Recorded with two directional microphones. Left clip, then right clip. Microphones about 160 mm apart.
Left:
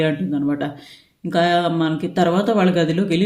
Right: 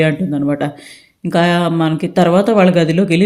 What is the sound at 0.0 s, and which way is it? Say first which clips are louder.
Speech: right 5 dB; 35° right (ahead or behind).